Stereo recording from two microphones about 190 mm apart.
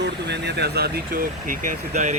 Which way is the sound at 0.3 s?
60° right (ahead or behind).